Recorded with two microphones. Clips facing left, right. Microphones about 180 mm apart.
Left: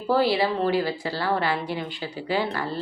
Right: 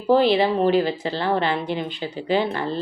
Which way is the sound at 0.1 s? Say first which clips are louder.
Right 5 dB; 20° right (ahead or behind).